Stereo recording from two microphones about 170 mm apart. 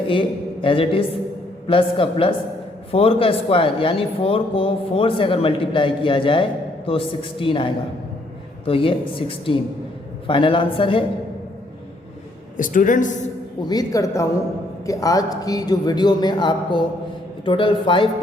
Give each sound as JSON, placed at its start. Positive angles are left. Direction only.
{"t": 0.1, "sound": "speech", "side_deg": 30}
{"t": 12.5, "sound": "speech", "side_deg": 50}
{"t": 13.6, "sound": "a man's voice", "side_deg": 25}